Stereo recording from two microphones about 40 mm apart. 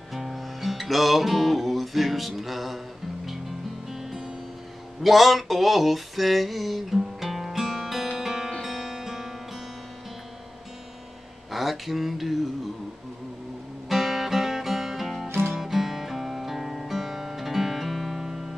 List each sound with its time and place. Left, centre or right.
0.1 s music: centre
3.9 s music: centre
5.0 s a sound: centre
8.1 s music: centre
11.5 s a sound: centre
13.8 s music: centre
15.2 s music: right
15.5 s music: centre